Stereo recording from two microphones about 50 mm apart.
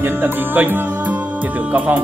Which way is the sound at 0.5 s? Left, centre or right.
Right.